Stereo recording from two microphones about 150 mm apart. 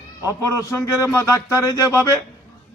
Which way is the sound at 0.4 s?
20° left (ahead or behind).